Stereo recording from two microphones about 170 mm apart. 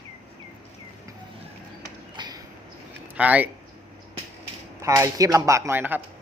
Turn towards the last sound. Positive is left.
turn(degrees=-10)  # may be behind; listen again after turning